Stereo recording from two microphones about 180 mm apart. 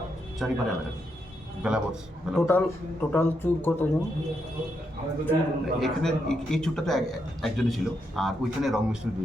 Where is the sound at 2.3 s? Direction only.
15° left (ahead or behind).